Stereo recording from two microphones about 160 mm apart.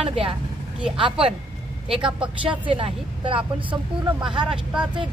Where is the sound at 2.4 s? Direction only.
35° right (ahead or behind).